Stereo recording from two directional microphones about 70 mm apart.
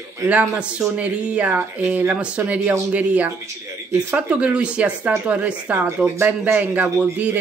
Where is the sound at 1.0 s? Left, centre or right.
Right.